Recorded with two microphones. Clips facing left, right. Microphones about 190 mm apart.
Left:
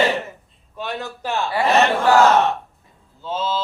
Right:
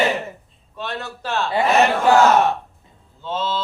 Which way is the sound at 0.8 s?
15° left (ahead or behind).